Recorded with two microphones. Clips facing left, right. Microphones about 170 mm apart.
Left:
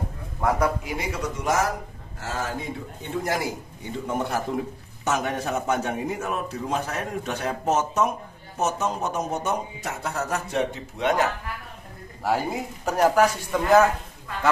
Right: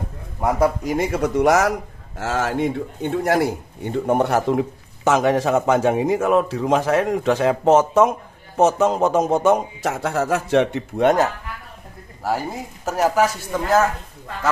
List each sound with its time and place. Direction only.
0.8 s speech: 50° right (ahead or behind); by 1.7 s 75° right (ahead or behind)
2.1 s a man's voice: 90° right
11.0 s speech: 50° right (ahead or behind)
12.2 s a man's voice: centre (ahead or behind)